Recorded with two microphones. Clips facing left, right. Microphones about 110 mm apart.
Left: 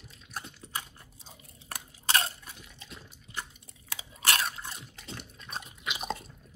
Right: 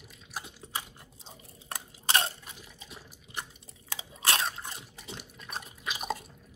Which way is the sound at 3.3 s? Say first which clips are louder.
Even; 25° right (ahead or behind).